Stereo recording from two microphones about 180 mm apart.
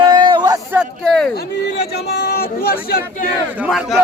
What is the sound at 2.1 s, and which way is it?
Speech, 60° left (ahead or behind).